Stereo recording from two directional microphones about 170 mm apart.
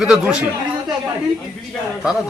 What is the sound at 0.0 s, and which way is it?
Speech, 5° right (ahead or behind).